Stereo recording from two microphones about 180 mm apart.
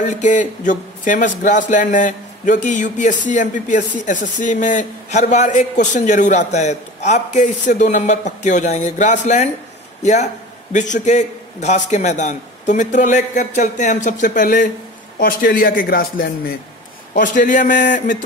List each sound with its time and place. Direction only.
0.0 s a man's voice: 45° left (ahead or behind)